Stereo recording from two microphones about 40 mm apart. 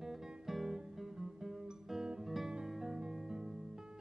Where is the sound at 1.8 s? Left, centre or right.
Centre.